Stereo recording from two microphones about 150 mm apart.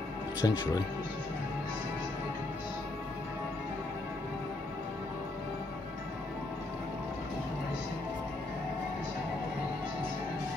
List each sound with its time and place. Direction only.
0.4 s speech: 25° left (ahead or behind)